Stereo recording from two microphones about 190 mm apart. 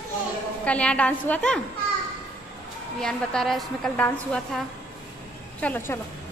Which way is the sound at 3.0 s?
5° left (ahead or behind).